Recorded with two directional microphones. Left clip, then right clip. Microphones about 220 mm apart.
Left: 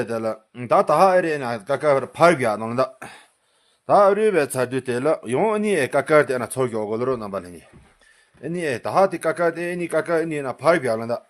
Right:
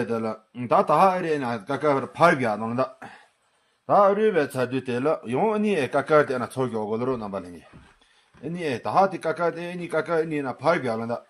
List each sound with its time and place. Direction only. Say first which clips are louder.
0.0 s speech: left 3 dB; 35° left (ahead or behind)
8.5 s speech: left 2 dB; 40° left (ahead or behind)